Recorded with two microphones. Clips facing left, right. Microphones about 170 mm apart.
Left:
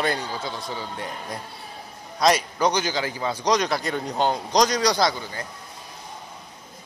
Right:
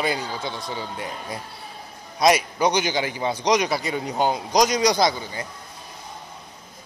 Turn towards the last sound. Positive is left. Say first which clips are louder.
# right 2 dB
turn(degrees=-15)  # may be behind; listen again after turning